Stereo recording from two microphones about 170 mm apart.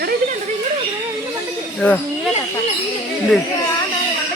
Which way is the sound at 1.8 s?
5° left (ahead or behind).